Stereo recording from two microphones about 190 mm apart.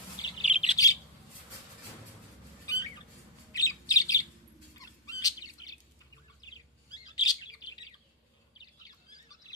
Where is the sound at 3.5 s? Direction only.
20° left (ahead or behind).